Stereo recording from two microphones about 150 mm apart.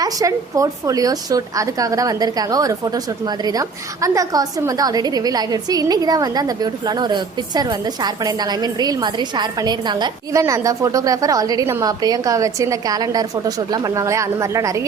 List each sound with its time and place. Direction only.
0.0 s a woman's voice: 25° right (ahead or behind)